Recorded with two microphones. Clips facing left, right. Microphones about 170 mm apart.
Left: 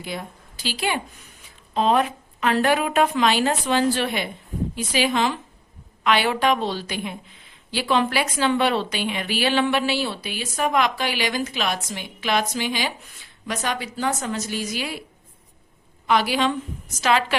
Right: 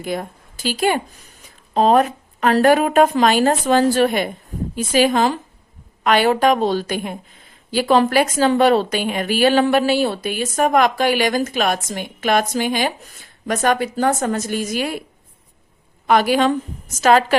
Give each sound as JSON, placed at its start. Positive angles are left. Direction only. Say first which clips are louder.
{"t": 0.0, "sound": "a woman's voice", "louder": "right 7 dB", "side_deg": -50}
{"t": 16.0, "sound": "a woman's voice", "louder": "right 5 dB", "side_deg": -50}